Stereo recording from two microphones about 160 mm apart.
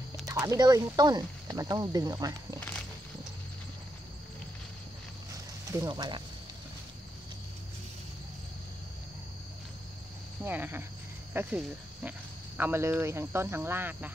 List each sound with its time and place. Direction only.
0.5 s speech: 20° right (ahead or behind)
5.7 s speech: 25° right (ahead or behind)
10.4 s speech: 10° right (ahead or behind)